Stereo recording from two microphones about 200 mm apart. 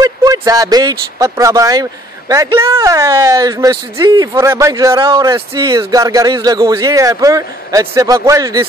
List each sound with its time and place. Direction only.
0.0 s speech: 15° right (ahead or behind)